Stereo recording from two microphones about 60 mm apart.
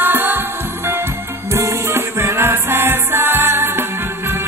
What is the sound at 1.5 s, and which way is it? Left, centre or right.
Music, right.